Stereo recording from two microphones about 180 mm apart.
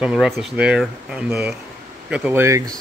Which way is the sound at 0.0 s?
5° right (ahead or behind).